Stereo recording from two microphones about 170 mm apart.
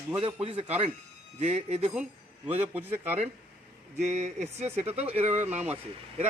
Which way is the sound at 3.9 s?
45° right (ahead or behind).